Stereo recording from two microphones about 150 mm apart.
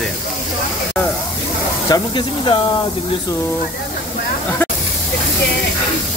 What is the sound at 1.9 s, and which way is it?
Speech, 30° left (ahead or behind).